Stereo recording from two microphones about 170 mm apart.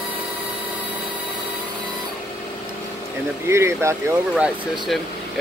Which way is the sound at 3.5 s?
15° right (ahead or behind).